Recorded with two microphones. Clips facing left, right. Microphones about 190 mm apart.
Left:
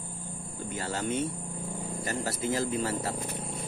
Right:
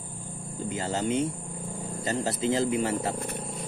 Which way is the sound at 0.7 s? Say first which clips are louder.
Right 4 dB; 25° right (ahead or behind).